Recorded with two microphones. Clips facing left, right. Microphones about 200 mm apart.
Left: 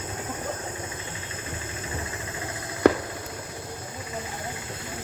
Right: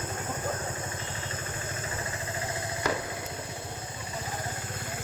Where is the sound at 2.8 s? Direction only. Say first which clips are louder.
Left 12 dB; 60° left (ahead or behind).